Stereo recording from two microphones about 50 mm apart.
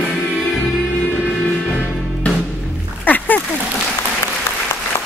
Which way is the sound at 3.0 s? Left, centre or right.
Left.